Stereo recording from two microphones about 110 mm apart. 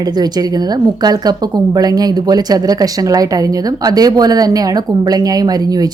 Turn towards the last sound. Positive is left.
turn(degrees=-35)  # may be behind; listen again after turning